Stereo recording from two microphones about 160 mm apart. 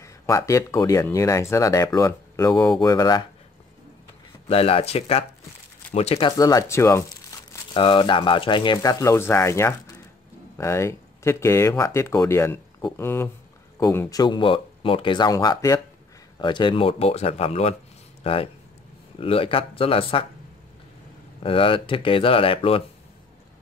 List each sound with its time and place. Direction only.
0.0 s speech: 20° left (ahead or behind)
4.5 s speech: 40° left (ahead or behind)
6.3 s speech: 25° left (ahead or behind)
7.7 s speech: 30° left (ahead or behind)
14.2 s speech: 30° left (ahead or behind)
21.4 s speech: 35° left (ahead or behind)